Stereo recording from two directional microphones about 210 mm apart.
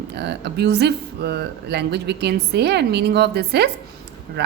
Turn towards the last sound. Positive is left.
turn(degrees=-55)  # may be behind; listen again after turning